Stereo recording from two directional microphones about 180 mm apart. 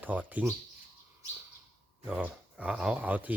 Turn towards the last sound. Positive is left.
turn(degrees=-10)  # may be behind; listen again after turning